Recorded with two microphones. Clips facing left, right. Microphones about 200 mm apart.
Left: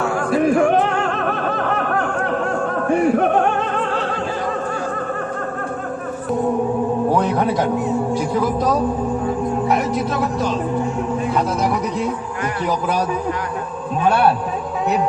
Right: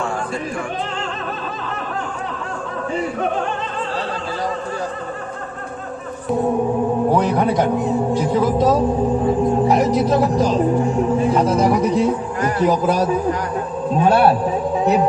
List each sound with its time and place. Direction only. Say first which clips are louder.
0.3 s speech: left 10 dB; 60° left (ahead or behind)
1.6 s snicker: left 6 dB; 60° left (ahead or behind)
2.8 s music: left 6 dB; 60° left (ahead or behind)
7.1 s a man's voice: right 1 dB; 15° right (ahead or behind)
9.6 s speech: right 4 dB; 35° right (ahead or behind)
12.6 s speech: right 4 dB; 35° right (ahead or behind)